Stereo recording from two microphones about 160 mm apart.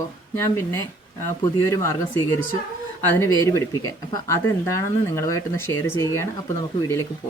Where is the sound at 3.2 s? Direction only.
15° left (ahead or behind).